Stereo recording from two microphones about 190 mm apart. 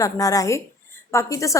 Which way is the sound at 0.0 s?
20° left (ahead or behind).